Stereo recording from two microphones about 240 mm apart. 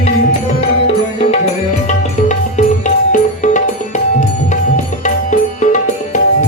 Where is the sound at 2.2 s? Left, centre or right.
Left.